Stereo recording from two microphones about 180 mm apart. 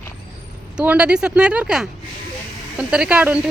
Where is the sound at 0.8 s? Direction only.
5° right (ahead or behind).